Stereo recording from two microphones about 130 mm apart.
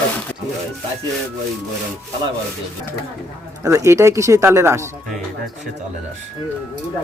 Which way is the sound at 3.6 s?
25° right (ahead or behind).